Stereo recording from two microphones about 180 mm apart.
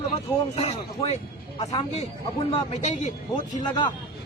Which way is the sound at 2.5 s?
40° left (ahead or behind).